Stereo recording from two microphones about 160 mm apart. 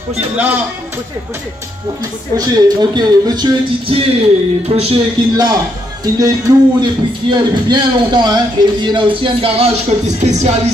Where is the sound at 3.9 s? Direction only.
35° right (ahead or behind).